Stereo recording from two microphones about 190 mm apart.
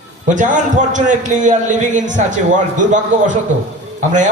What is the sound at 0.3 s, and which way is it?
A man's voice, 40° right (ahead or behind).